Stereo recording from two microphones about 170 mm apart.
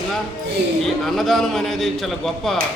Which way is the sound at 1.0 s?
Centre (ahead or behind).